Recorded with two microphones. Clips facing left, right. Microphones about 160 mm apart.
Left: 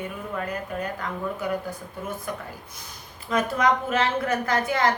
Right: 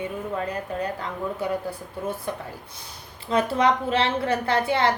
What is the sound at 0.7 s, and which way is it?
A woman's voice, 30° right (ahead or behind).